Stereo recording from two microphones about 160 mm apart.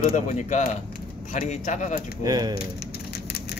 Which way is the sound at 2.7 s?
85° left.